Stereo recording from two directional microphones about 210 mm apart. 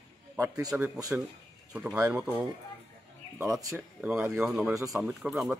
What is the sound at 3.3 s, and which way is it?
A man's voice, centre (ahead or behind).